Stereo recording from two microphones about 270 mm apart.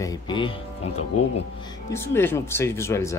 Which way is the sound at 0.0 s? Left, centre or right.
Centre.